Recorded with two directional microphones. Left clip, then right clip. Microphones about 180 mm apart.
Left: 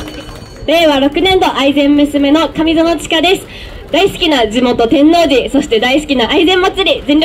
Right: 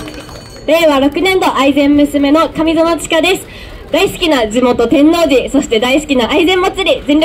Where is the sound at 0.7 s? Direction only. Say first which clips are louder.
Even; 25° right (ahead or behind).